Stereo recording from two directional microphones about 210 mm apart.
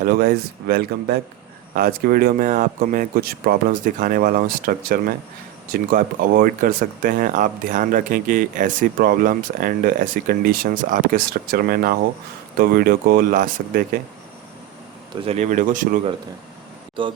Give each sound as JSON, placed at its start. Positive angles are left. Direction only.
{"t": 0.0, "sound": "speech", "side_deg": -45}
{"t": 15.1, "sound": "speech", "side_deg": -25}